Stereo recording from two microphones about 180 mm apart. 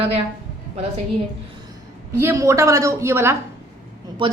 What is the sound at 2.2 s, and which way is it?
A woman's voice, 15° right (ahead or behind).